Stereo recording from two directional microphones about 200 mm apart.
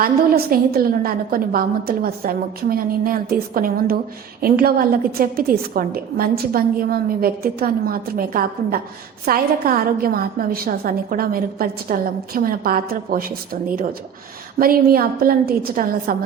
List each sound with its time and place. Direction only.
0.0 s a woman's voice: 50° right (ahead or behind)